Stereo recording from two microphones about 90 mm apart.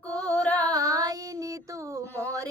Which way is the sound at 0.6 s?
40° right (ahead or behind).